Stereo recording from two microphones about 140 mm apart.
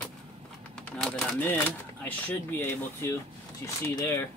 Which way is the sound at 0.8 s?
10° left (ahead or behind).